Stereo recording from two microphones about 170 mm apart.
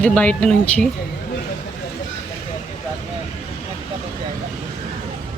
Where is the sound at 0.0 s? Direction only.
10° left (ahead or behind).